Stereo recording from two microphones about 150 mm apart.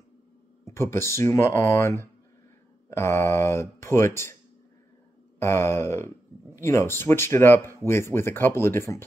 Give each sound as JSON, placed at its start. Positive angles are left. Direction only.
{"t": 0.7, "sound": "speech", "side_deg": 15}
{"t": 5.4, "sound": "speech", "side_deg": 15}